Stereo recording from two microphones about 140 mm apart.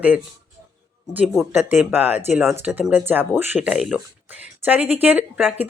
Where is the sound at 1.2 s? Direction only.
5° left (ahead or behind).